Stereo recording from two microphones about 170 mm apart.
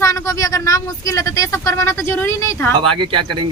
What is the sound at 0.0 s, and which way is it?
Speech, 20° left (ahead or behind).